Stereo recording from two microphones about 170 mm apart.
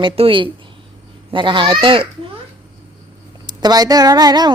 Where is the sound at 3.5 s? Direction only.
25° right (ahead or behind).